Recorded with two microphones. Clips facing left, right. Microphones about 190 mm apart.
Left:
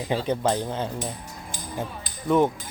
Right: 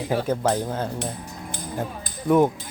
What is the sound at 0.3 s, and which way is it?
Speech, 5° right (ahead or behind).